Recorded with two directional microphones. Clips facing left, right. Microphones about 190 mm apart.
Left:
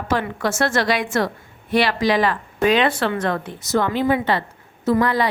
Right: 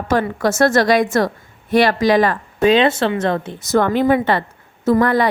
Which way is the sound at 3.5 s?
50° right (ahead or behind).